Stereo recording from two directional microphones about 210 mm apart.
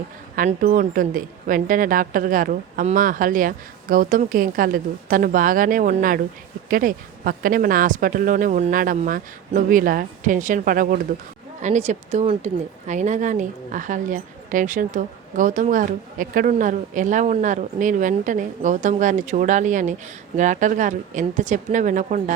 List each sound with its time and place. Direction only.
0.3 s a woman's voice: 40° right (ahead or behind)